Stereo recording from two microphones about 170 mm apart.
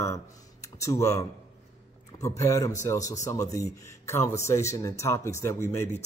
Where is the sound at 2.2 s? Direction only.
20° left (ahead or behind).